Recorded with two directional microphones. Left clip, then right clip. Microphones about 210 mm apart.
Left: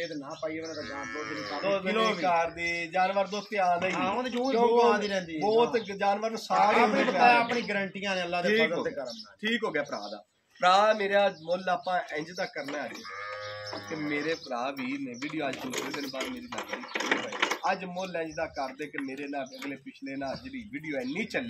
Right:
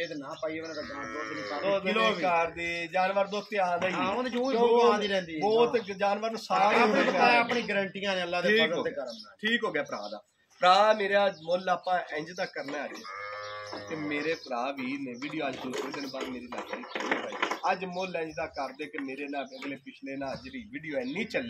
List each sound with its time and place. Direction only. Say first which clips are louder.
0.0 s speech: even; centre (ahead or behind)
1.6 s speech: right 1 dB; 5° right (ahead or behind)
4.5 s speech: even; 5° right (ahead or behind)
14.0 s speech: even; centre (ahead or behind)
15.6 s speech: left 1 dB; 35° left (ahead or behind)
17.6 s speech: right 1 dB; centre (ahead or behind)
20.9 s speech: even; centre (ahead or behind)